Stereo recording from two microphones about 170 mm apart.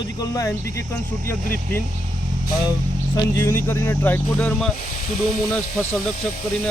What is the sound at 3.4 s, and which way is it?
Speech, 15° left (ahead or behind).